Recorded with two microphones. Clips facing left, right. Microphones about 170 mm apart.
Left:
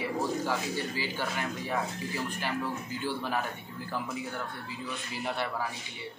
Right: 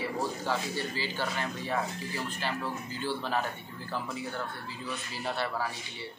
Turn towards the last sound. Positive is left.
turn(degrees=15)  # may be behind; listen again after turning